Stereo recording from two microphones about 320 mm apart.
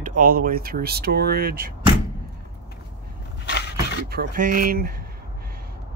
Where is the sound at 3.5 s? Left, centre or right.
Left.